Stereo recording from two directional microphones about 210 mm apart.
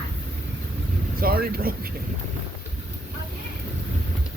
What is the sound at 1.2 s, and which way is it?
Speech, 45° right (ahead or behind).